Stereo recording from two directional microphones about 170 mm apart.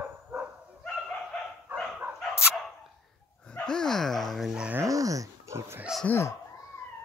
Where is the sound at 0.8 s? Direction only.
5° left (ahead or behind).